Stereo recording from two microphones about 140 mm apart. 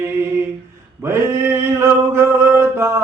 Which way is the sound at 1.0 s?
20° right (ahead or behind).